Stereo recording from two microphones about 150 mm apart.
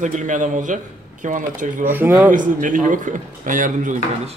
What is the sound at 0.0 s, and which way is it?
Speech, 55° right (ahead or behind).